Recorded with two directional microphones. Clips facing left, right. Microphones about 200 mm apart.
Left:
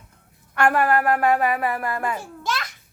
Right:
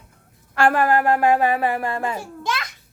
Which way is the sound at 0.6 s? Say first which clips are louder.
Right 2 dB; 30° right (ahead or behind).